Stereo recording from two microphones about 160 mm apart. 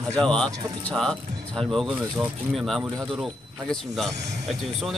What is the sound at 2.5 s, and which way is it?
Speech, centre (ahead or behind).